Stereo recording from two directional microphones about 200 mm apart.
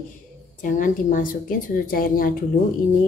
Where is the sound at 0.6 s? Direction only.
40° left (ahead or behind).